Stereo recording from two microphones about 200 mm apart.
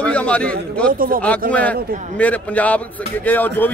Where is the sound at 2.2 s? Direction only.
5° left (ahead or behind).